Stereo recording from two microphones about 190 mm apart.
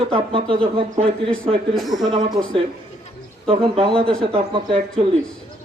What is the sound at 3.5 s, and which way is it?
A man's voice, 30° right (ahead or behind).